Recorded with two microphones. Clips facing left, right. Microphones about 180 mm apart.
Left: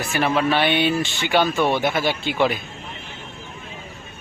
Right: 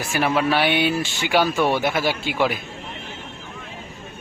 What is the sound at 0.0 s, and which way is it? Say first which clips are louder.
Speech: even; 10° right (ahead or behind).